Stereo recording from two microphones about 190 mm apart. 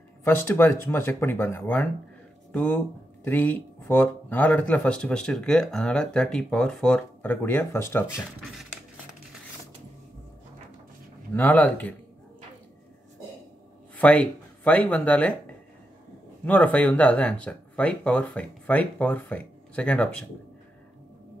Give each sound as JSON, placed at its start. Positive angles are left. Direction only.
{"t": 0.2, "sound": "speech", "side_deg": 10}
{"t": 11.3, "sound": "speech", "side_deg": 10}
{"t": 13.9, "sound": "speech", "side_deg": 5}
{"t": 16.4, "sound": "speech", "side_deg": 5}